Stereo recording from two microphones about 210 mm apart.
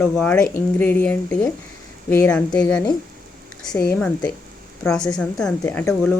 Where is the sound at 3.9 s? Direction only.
5° left (ahead or behind).